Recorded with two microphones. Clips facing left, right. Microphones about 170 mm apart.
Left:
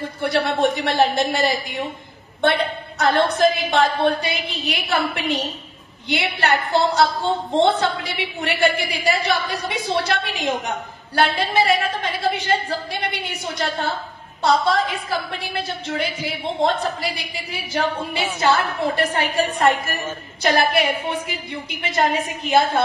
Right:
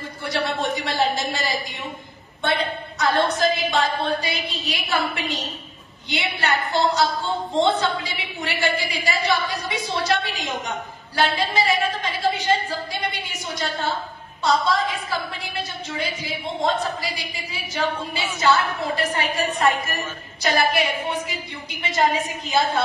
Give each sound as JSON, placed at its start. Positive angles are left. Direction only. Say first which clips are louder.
{"t": 0.2, "sound": "a woman's voice", "louder": "left 6 dB", "side_deg": 60}
{"t": 3.0, "sound": "a woman's voice", "louder": "left 4 dB", "side_deg": 60}
{"t": 20.4, "sound": "a woman's voice", "louder": "left 3 dB", "side_deg": 55}